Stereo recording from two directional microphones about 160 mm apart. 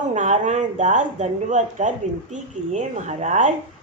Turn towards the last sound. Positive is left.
turn(degrees=-50)  # may be behind; listen again after turning